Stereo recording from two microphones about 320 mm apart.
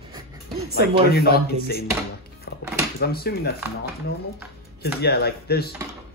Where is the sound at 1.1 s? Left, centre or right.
Left.